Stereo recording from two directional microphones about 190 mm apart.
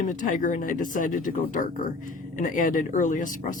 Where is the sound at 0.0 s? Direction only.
40° left (ahead or behind).